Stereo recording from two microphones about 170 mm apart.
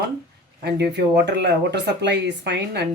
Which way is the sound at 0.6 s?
80° right.